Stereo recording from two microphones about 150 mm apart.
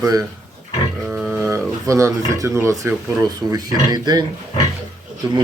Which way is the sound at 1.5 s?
20° right (ahead or behind).